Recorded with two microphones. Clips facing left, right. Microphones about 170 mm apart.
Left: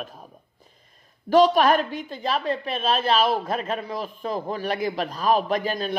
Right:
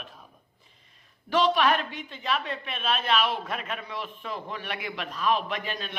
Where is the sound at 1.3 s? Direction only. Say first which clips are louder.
Left 6 dB; 40° left (ahead or behind).